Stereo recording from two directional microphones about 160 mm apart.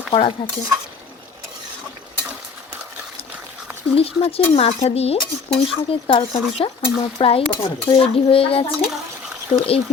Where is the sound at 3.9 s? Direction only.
35° left (ahead or behind).